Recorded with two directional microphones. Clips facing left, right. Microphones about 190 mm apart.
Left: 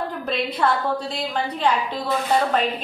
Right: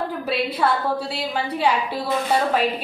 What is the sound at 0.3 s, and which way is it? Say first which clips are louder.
A woman's voice: even; 5° right (ahead or behind).